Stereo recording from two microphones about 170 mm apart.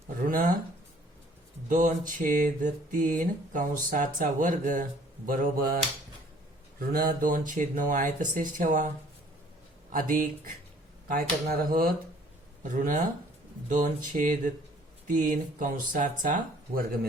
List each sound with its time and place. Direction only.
0.2 s a sound: 55° right (ahead or behind)
1.7 s mantra: 50° right (ahead or behind)
9.9 s speech: 55° right (ahead or behind)
12.6 s mantra: 50° right (ahead or behind)